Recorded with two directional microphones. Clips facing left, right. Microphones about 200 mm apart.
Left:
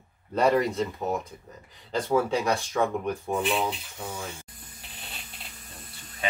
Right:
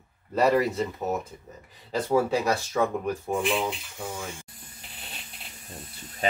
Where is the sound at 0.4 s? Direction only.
5° right (ahead or behind).